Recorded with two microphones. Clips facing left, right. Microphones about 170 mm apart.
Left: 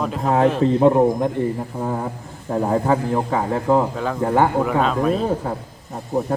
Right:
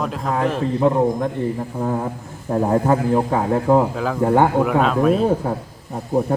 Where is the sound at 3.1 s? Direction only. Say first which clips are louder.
Right 3 dB; 15° right (ahead or behind).